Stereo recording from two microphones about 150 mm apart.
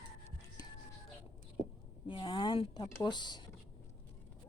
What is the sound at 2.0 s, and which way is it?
Speech, 35° left (ahead or behind).